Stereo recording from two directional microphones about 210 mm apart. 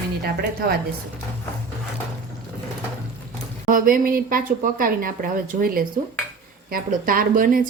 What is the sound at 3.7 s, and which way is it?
Speech, 40° right (ahead or behind).